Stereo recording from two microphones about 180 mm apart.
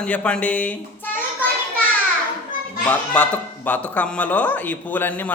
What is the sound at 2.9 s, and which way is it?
Speech, 10° left (ahead or behind).